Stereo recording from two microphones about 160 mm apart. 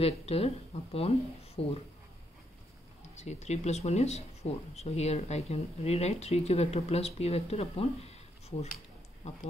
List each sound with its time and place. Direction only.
0.0 s speech: 40° left (ahead or behind)
3.2 s speech: 45° left (ahead or behind)